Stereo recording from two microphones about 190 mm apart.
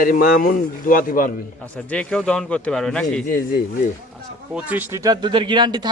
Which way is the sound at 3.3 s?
45° left (ahead or behind).